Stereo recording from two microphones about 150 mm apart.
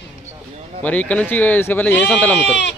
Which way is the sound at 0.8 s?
10° left (ahead or behind).